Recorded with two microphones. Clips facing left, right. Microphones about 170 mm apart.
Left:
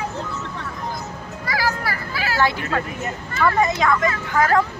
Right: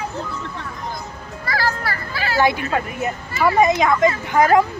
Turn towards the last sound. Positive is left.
turn(degrees=-15)  # may be behind; listen again after turning